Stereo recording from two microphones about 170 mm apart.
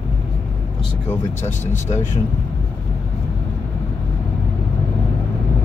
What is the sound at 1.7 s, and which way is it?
Speech, 45° left (ahead or behind).